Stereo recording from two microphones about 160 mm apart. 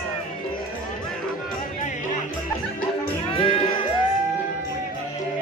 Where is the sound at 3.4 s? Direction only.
35° left (ahead or behind).